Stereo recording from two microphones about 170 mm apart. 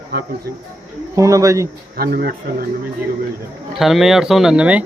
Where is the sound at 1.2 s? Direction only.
20° right (ahead or behind).